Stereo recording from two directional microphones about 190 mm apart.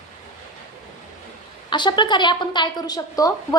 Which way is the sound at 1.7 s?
25° left (ahead or behind).